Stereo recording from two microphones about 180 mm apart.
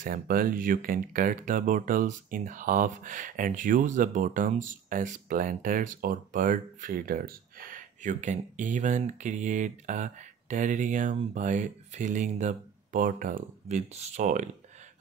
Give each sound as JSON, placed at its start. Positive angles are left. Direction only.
{"t": 0.0, "sound": "speech", "side_deg": -50}